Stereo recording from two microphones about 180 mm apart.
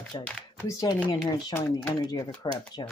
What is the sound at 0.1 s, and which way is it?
Speech, 25° left (ahead or behind).